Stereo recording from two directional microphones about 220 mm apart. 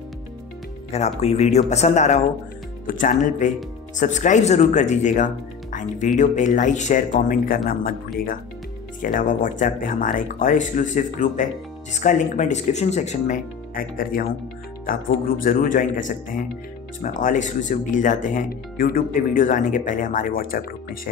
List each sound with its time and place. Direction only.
0.9 s speech: 30° left (ahead or behind)
9.0 s speech: 35° left (ahead or behind)